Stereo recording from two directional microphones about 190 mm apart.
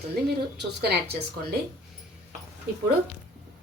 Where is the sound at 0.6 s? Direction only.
60° right (ahead or behind).